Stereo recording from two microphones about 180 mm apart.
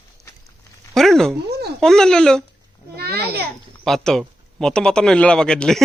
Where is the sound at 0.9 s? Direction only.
Centre (ahead or behind).